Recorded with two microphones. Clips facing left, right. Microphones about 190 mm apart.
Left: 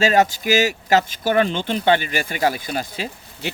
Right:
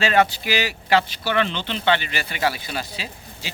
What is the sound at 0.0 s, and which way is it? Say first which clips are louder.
Speech: left 2 dB; 40° left (ahead or behind).